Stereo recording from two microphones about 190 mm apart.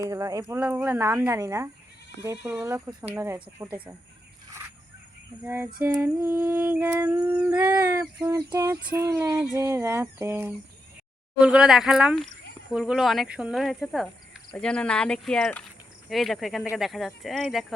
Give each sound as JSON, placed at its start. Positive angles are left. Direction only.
{"t": 0.0, "sound": "speech", "side_deg": -15}
{"t": 5.4, "sound": "speech", "side_deg": -10}